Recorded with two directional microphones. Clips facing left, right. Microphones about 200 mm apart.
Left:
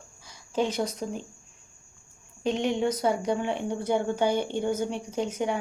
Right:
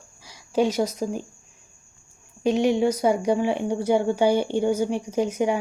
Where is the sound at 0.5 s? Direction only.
10° right (ahead or behind).